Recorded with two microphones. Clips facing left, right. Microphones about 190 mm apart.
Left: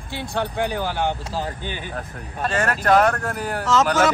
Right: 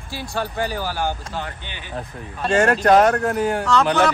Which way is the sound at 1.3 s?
35° left (ahead or behind).